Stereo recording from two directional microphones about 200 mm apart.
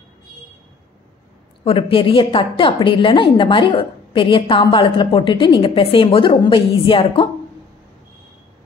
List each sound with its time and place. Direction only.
1.6 s a woman's voice: 30° left (ahead or behind)